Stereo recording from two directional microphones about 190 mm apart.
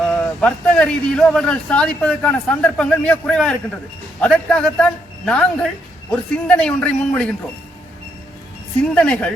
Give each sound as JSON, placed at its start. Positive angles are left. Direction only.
{"t": 0.0, "sound": "speech", "side_deg": 5}
{"t": 8.8, "sound": "speech", "side_deg": 5}